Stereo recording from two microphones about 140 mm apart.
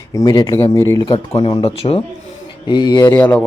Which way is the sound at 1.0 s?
40° left (ahead or behind).